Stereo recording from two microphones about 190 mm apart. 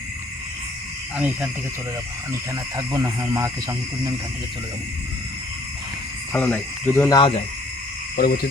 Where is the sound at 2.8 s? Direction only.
20° right (ahead or behind).